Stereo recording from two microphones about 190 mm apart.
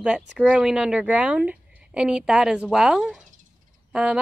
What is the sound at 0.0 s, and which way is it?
Speech, 5° right (ahead or behind).